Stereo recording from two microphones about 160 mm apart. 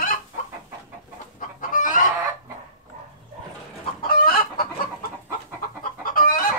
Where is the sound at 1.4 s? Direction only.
55° left (ahead or behind).